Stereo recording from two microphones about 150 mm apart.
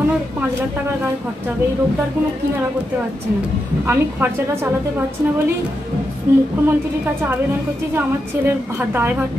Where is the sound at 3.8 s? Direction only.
15° right (ahead or behind).